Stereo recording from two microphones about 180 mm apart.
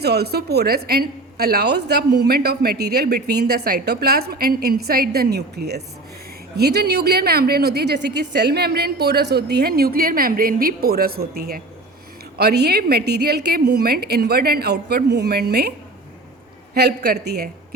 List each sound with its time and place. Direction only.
0.0 s a woman's voice: 65° right (ahead or behind)
16.7 s speech: 65° right (ahead or behind)